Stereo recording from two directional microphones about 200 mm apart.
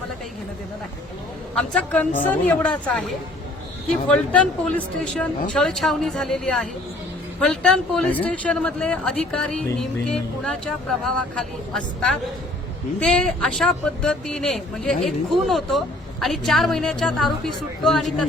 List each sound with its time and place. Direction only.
1.5 s speech: 5° left (ahead or behind)